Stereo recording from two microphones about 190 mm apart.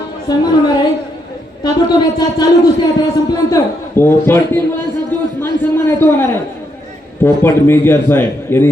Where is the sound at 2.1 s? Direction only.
20° left (ahead or behind).